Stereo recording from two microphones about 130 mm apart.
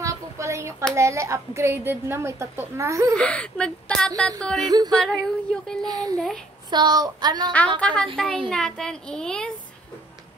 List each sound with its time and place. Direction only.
0.0 s a sound: 25° right (ahead or behind)
0.9 s a woman's voice: 20° right (ahead or behind)
3.2 s speech: 10° left (ahead or behind)
4.6 s a woman's voice: 30° right (ahead or behind)
4.9 s a child's voice: 5° left (ahead or behind)
5.9 s a woman's voice: 30° right (ahead or behind)
6.1 s a child's voice: 5° left (ahead or behind)
6.7 s a woman's voice: 35° right (ahead or behind)
7.8 s a child's voice: 10° left (ahead or behind)